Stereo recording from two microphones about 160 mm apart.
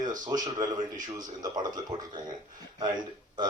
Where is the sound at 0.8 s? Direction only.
55° right (ahead or behind).